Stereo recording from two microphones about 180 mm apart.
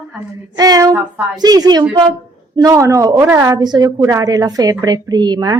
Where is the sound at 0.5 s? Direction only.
20° right (ahead or behind).